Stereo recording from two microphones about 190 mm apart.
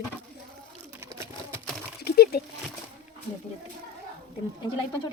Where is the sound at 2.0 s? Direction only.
55° left (ahead or behind).